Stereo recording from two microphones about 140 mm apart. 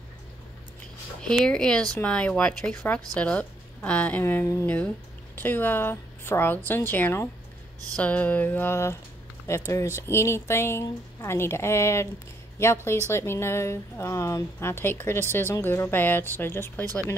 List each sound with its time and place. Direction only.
1.4 s a woman's voice: 5° left (ahead or behind)
13.1 s speech: 20° left (ahead or behind)